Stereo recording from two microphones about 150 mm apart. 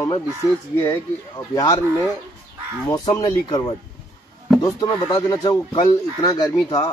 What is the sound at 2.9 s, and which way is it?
Speech, 30° left (ahead or behind).